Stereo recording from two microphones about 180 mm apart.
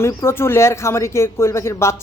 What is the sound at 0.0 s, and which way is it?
Speech, 15° left (ahead or behind).